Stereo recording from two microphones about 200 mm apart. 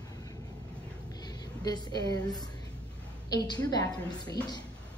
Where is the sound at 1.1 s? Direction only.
20° left (ahead or behind).